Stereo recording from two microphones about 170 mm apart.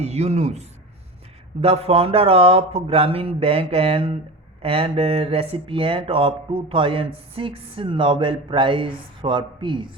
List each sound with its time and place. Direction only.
0.0 s speech: 40° right (ahead or behind)